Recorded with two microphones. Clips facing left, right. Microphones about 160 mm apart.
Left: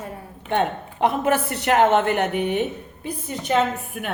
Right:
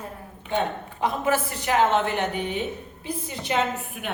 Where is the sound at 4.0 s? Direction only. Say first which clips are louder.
Left 4 dB; 50° left (ahead or behind).